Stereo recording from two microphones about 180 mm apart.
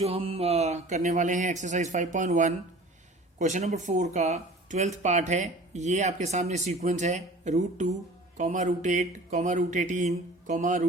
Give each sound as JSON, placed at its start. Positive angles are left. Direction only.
{"t": 0.0, "sound": "speech", "side_deg": -30}